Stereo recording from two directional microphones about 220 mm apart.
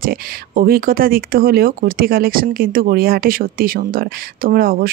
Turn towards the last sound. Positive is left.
turn(degrees=-40)  # may be behind; listen again after turning